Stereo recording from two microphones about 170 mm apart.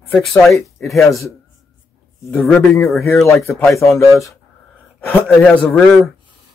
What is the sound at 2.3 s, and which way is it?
Speech, 5° left (ahead or behind).